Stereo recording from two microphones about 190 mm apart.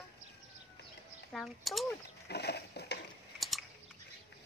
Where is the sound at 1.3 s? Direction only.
Centre (ahead or behind).